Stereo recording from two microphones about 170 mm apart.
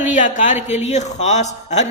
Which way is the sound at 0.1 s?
45° left (ahead or behind).